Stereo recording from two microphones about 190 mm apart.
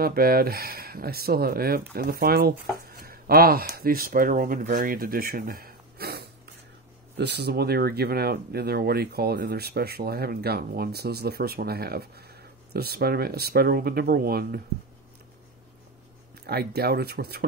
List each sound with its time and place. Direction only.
0.0 s speech: 50° right (ahead or behind)
16.4 s speech: 55° right (ahead or behind)